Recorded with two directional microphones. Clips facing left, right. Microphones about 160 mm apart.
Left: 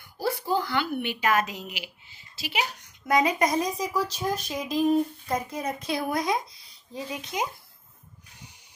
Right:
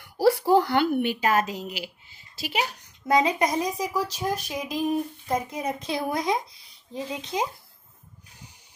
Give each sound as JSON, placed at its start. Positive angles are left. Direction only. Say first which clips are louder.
{"t": 0.0, "sound": "a woman's voice", "louder": "right 9 dB", "side_deg": -70}
{"t": 3.1, "sound": "speech", "louder": "right 1 dB", "side_deg": -25}
{"t": 3.4, "sound": "speech", "louder": "even", "side_deg": -10}